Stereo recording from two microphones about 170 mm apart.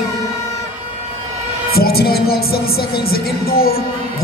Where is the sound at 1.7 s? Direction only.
65° left (ahead or behind).